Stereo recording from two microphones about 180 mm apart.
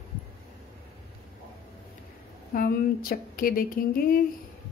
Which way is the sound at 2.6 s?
55° left (ahead or behind).